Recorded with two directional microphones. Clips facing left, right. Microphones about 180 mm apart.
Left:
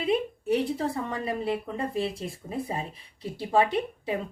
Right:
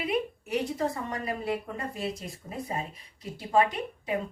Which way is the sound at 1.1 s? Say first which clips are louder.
Left 2 dB; 30° left (ahead or behind).